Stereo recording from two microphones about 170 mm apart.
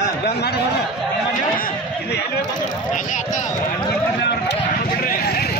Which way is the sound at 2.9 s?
45° left (ahead or behind).